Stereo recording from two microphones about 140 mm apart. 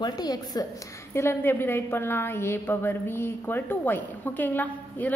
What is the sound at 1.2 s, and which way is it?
A woman's voice, 15° left (ahead or behind).